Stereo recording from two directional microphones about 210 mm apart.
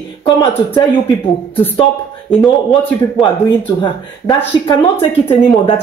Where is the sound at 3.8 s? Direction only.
20° left (ahead or behind).